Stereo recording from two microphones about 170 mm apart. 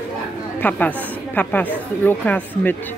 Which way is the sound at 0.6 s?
10° left (ahead or behind).